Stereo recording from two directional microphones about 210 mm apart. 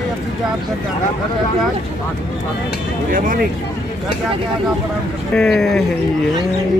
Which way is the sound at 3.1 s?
40° right (ahead or behind).